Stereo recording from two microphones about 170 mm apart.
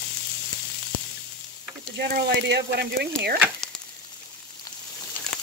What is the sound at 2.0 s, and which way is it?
Speech, 70° right (ahead or behind).